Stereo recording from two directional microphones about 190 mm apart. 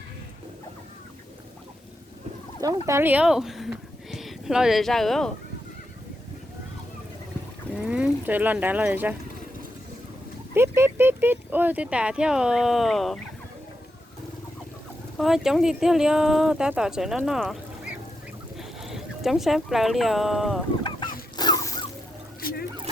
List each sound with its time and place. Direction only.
2.6 s speech: 15° right (ahead or behind); by 5.3 s centre (ahead or behind)
7.8 s speech: 5° right (ahead or behind)
10.5 s speech: 15° right (ahead or behind)
15.2 s speech: centre (ahead or behind)
20.8 s a sound: 25° left (ahead or behind)
22.4 s vehicle: 50° left (ahead or behind)